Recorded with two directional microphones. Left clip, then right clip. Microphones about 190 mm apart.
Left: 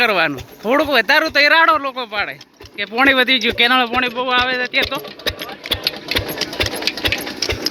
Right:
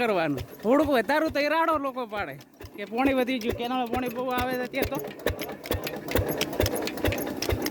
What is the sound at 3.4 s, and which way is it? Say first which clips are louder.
Speech: left 15 dB; 15° left (ahead or behind).